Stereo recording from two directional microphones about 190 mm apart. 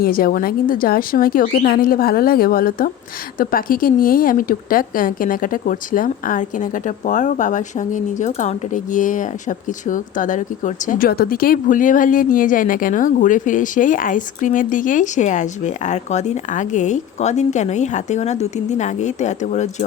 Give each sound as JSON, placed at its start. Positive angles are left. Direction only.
{"t": 0.0, "sound": "a woman's voice", "side_deg": 50}